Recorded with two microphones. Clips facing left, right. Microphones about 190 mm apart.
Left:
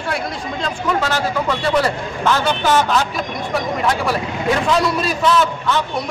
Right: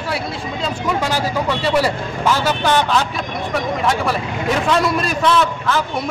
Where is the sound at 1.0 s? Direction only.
10° right (ahead or behind).